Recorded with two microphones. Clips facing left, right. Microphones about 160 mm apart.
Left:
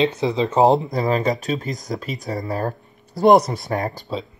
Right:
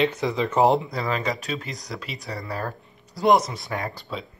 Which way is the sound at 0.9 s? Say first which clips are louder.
Left 6 dB; 45° left (ahead or behind).